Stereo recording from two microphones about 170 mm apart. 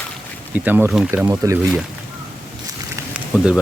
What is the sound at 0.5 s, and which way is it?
Speech, 10° right (ahead or behind).